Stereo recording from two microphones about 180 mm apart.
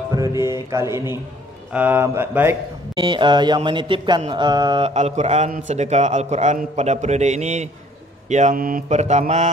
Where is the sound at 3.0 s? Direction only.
25° right (ahead or behind).